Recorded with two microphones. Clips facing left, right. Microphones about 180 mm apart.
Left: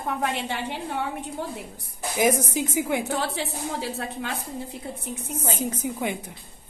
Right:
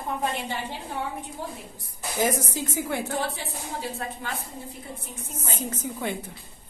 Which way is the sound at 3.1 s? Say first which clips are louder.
Left 2 dB; 85° left.